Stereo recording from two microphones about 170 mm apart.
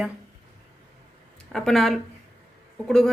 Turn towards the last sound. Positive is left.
turn(degrees=5)  # may be behind; listen again after turning